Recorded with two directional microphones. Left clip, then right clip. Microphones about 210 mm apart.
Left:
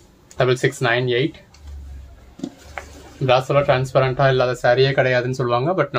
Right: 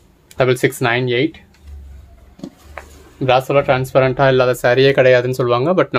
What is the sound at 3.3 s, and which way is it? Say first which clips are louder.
Speech: right 3 dB; 50° right (ahead or behind).